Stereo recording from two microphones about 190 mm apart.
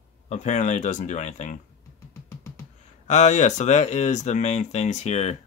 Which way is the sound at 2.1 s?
15° left (ahead or behind).